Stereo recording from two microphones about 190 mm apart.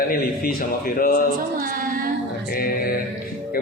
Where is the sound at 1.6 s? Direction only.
45° right (ahead or behind).